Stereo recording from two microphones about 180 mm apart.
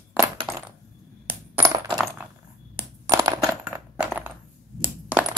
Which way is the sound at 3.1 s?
15° right (ahead or behind).